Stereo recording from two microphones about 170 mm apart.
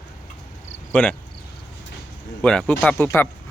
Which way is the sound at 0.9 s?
10° left (ahead or behind).